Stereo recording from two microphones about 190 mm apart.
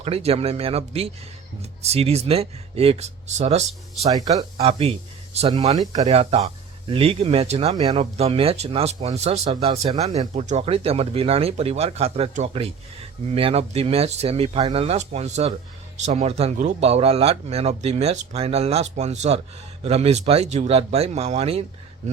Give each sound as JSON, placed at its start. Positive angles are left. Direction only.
{"t": 0.0, "sound": "speech", "side_deg": -30}
{"t": 4.1, "sound": "speech", "side_deg": -20}
{"t": 4.5, "sound": "speech", "side_deg": -30}